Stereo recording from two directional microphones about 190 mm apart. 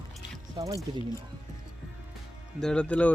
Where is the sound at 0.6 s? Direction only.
20° right (ahead or behind).